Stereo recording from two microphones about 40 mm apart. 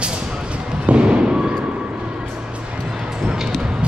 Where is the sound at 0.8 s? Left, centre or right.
Right.